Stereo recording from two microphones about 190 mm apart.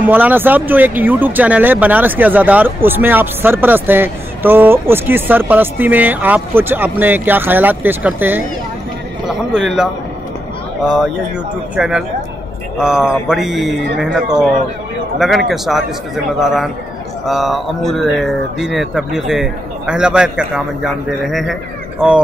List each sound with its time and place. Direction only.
0.0 s speech: 10° right (ahead or behind)
9.5 s speech: centre (ahead or behind)